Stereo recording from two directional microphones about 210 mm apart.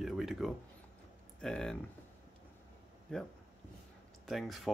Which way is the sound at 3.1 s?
5° left (ahead or behind).